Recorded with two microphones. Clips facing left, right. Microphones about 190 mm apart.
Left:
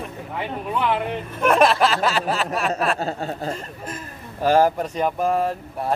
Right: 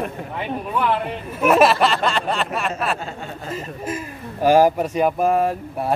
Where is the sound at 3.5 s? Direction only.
10° right (ahead or behind).